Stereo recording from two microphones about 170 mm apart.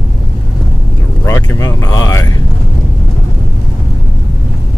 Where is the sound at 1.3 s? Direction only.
15° left (ahead or behind).